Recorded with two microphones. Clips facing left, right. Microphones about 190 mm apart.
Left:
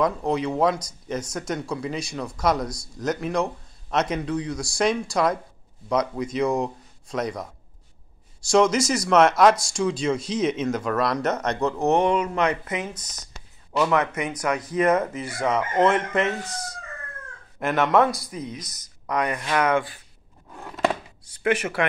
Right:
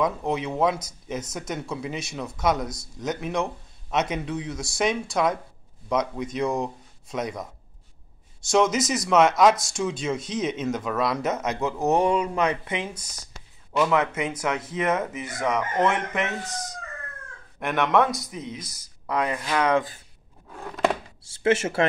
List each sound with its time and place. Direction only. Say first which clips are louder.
0.0 s speech: left 2 dB; centre (ahead or behind)
8.5 s speech: left 2 dB; centre (ahead or behind)
14.1 s speech: left 1 dB; 25° right (ahead or behind)
15.4 s speech: left 3 dB; 20° left (ahead or behind)
17.6 s speech: left 2 dB; centre (ahead or behind)
20.6 s a sound: even; centre (ahead or behind)
21.4 s speech: right 2 dB; 25° right (ahead or behind)